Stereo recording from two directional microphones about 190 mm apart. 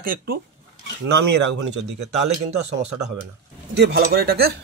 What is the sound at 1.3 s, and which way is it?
Speech, 65° right (ahead or behind).